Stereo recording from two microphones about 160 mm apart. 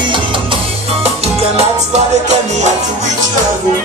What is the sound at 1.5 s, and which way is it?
Music, 45° right (ahead or behind).